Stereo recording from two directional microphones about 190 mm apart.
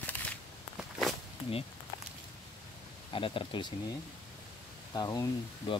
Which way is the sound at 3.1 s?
30° left (ahead or behind).